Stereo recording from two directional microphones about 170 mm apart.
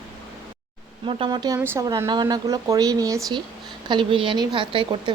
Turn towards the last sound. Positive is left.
turn(degrees=-30)  # may be behind; listen again after turning